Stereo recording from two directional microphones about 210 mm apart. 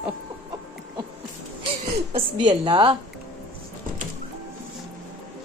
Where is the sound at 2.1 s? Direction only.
25° right (ahead or behind).